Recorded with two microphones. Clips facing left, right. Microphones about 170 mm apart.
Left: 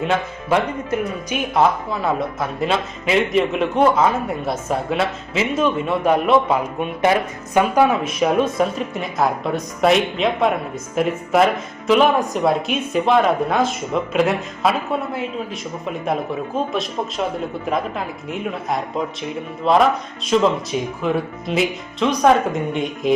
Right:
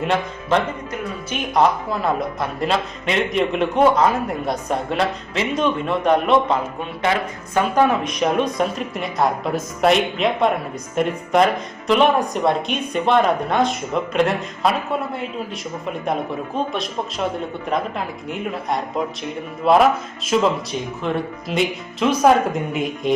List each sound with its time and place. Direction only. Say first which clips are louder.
0.0 s speech: even; 5° left (ahead or behind)
7.0 s a woman's voice: left 3 dB; 20° left (ahead or behind)
7.6 s speech: left 1 dB; 10° left (ahead or behind)
16.7 s speech: left 2 dB; centre (ahead or behind)